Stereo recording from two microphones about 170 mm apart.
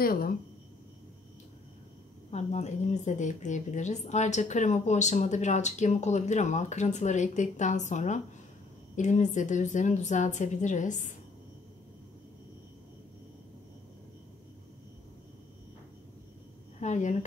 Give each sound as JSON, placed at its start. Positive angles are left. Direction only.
{"t": 0.0, "sound": "speech", "side_deg": 60}
{"t": 2.3, "sound": "speech", "side_deg": 40}
{"t": 16.8, "sound": "speech", "side_deg": 45}